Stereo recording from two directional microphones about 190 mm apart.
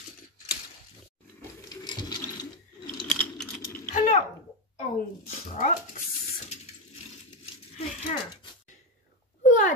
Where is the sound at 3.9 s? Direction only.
45° left (ahead or behind).